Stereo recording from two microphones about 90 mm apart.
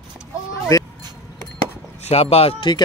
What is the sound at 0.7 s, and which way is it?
Speech, 45° left (ahead or behind).